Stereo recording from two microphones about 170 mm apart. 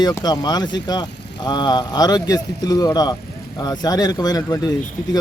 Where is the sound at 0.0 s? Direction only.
25° left (ahead or behind).